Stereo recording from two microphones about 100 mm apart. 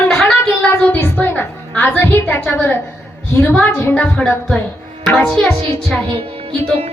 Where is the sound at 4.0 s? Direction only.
15° left (ahead or behind).